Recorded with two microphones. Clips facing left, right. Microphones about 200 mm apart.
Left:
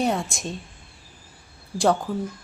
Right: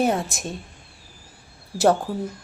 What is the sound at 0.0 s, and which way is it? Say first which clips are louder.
Speech: right 2 dB; centre (ahead or behind).